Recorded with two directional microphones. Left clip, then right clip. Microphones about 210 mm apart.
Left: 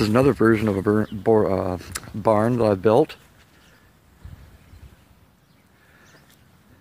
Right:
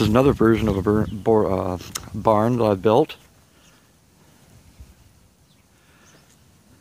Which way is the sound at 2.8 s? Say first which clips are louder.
Even; 20° right (ahead or behind).